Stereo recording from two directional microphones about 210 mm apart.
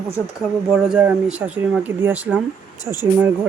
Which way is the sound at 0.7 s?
5° right (ahead or behind).